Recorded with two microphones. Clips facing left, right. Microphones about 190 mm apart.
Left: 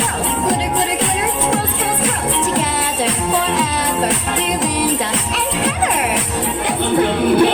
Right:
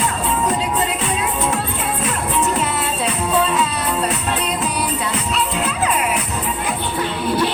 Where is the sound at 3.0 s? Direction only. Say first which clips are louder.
Right 1 dB; 90° left.